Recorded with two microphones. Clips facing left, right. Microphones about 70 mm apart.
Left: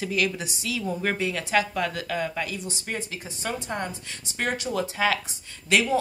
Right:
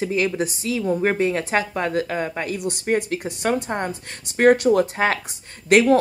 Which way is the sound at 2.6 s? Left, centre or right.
Right.